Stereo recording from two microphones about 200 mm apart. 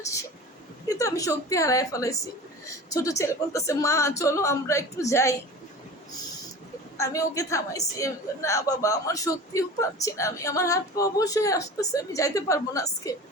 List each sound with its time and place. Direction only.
0.9 s a woman's voice: 15° left (ahead or behind)
6.9 s a woman's voice: 15° left (ahead or behind)